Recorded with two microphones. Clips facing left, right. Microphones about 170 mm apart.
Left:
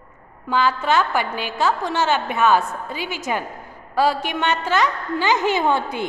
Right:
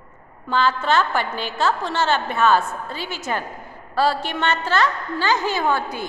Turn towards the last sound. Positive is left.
turn(degrees=20)  # may be behind; listen again after turning